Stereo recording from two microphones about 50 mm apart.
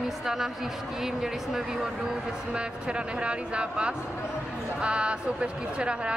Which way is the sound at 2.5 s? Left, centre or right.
Centre.